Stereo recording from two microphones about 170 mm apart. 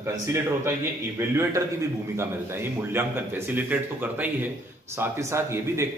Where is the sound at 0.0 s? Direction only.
15° right (ahead or behind).